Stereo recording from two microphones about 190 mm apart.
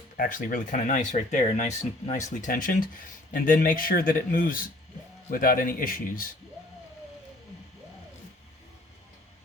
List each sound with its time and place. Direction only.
0.2 s speech: 45° left (ahead or behind)